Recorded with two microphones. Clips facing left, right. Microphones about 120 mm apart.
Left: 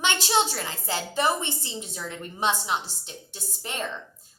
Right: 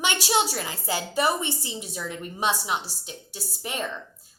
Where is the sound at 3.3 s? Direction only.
10° right (ahead or behind).